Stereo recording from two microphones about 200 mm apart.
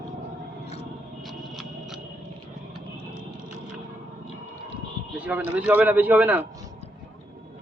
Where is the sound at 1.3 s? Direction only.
Centre (ahead or behind).